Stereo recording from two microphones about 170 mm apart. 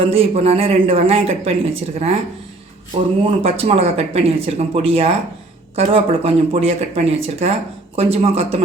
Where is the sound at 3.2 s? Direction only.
35° right (ahead or behind).